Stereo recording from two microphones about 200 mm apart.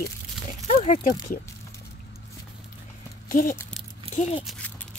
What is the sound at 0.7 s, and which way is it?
Speech, 35° left (ahead or behind).